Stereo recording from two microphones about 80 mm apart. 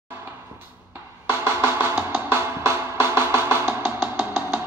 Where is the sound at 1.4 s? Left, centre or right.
Right.